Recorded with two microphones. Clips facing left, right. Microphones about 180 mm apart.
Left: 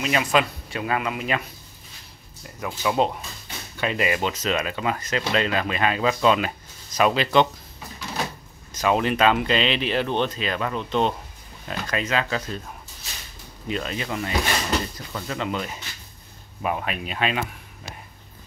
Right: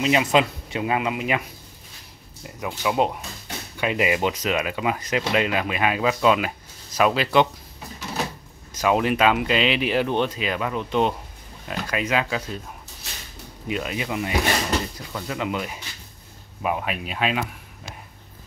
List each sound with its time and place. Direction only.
0.0 s speech: 20° right (ahead or behind)
2.4 s speech: 15° right (ahead or behind)
8.7 s speech: 10° right (ahead or behind)
13.7 s speech: 10° right (ahead or behind)